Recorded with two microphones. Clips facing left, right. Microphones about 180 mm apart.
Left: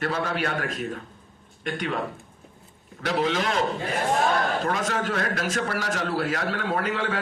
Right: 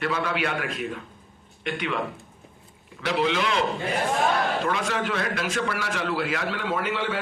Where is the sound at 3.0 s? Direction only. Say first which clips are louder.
Even; 45° left (ahead or behind).